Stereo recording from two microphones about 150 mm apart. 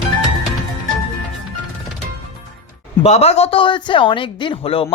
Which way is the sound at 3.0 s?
45° left (ahead or behind).